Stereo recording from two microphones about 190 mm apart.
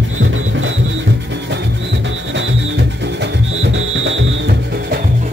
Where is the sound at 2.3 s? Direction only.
70° right (ahead or behind).